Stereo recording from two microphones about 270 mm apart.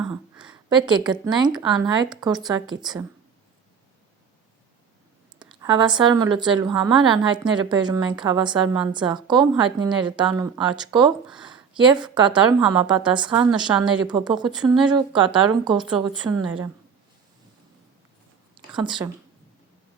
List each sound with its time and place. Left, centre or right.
0.7 s a woman's voice: centre
5.6 s a woman's voice: centre
18.5 s a sound: centre